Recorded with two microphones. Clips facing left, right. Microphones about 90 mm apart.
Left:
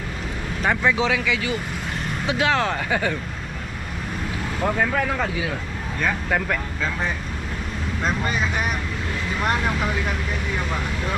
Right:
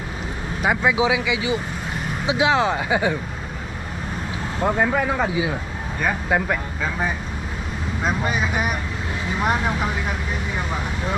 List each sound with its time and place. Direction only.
0.6 s speech: 10° right (ahead or behind)
4.6 s speech: 15° right (ahead or behind)